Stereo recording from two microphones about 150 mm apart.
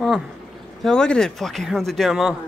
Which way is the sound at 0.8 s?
5° left (ahead or behind).